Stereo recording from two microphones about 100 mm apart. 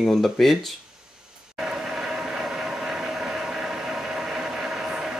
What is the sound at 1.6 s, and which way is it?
Vehicle, 5° right (ahead or behind).